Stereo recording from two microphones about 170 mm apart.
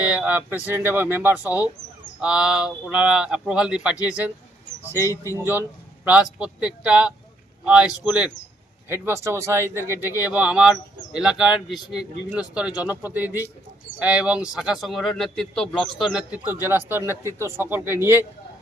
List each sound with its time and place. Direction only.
0.0 s a man's voice: 5° right (ahead or behind)
4.8 s speech: 15° left (ahead or behind)
6.1 s a man's voice: 5° right (ahead or behind)